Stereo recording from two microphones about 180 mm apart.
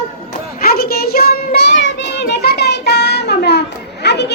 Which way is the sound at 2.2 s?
65° left (ahead or behind).